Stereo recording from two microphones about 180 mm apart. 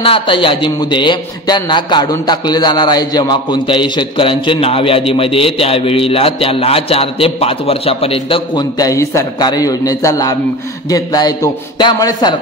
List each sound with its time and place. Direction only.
0.0 s a man's voice: 30° left (ahead or behind)